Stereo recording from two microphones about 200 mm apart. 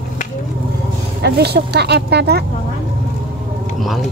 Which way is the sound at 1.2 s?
55° right (ahead or behind).